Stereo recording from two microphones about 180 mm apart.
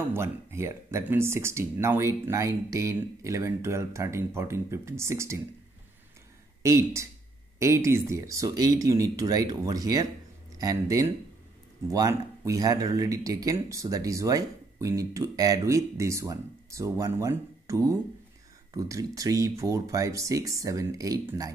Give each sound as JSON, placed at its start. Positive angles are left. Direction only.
{"t": 0.1, "sound": "speech", "side_deg": -15}
{"t": 6.6, "sound": "speech", "side_deg": -15}